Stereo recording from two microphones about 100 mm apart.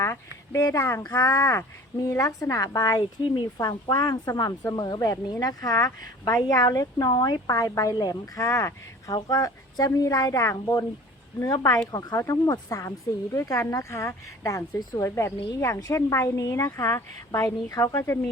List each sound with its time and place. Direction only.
0.0 s a sound: 25° left (ahead or behind)
0.6 s speech: 30° left (ahead or behind)
18.0 s speech: 20° left (ahead or behind)